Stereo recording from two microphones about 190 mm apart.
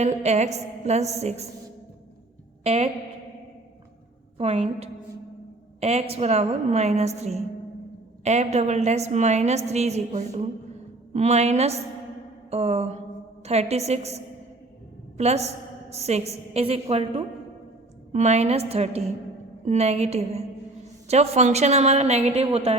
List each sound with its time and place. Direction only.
0.0 s a woman's voice: 35° right (ahead or behind)
2.6 s a woman's voice: 35° right (ahead or behind)
4.4 s a woman's voice: 35° right (ahead or behind)
15.2 s a woman's voice: 35° right (ahead or behind)